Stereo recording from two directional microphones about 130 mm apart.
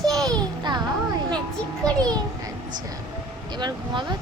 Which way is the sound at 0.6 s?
35° right (ahead or behind).